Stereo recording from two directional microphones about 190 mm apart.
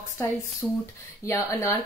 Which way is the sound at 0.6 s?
Centre (ahead or behind).